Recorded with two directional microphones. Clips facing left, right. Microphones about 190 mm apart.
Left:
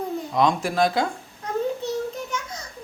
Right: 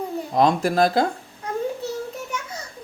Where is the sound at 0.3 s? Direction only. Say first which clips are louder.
Right 3 dB; 40° right (ahead or behind).